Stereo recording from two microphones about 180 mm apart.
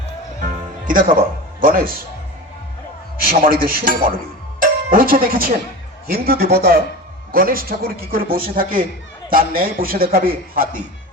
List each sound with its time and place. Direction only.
0.9 s a man's voice: 50° right (ahead or behind)
3.2 s a man's voice: 55° right (ahead or behind)